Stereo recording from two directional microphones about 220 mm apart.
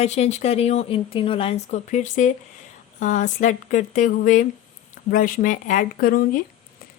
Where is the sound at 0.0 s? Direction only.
30° left (ahead or behind).